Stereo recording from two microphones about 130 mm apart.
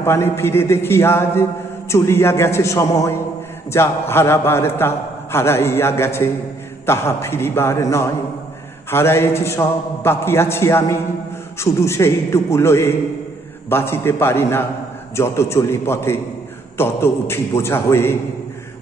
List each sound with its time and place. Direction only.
0.0 s a man's voice: 20° left (ahead or behind)